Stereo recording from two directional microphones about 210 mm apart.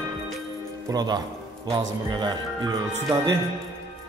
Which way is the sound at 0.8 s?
20° right (ahead or behind).